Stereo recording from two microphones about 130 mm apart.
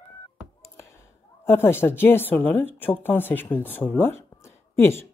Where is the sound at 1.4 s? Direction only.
20° left (ahead or behind).